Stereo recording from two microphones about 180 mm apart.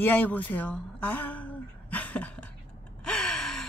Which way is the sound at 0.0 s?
10° left (ahead or behind).